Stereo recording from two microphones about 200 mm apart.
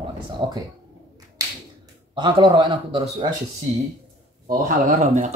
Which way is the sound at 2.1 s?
25° right (ahead or behind).